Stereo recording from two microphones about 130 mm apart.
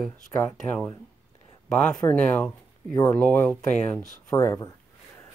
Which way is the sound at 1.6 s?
5° left (ahead or behind).